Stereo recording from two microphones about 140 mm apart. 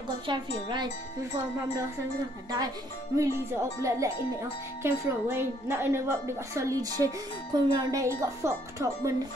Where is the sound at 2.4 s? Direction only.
30° right (ahead or behind).